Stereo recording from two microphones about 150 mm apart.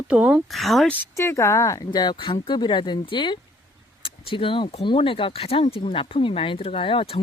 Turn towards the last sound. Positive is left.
turn(degrees=35)  # may be behind; listen again after turning